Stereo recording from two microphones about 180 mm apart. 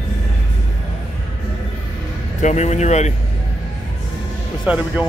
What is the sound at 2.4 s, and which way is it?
Speech, 40° left (ahead or behind).